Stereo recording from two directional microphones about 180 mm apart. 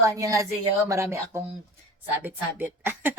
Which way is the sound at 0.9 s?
15° right (ahead or behind).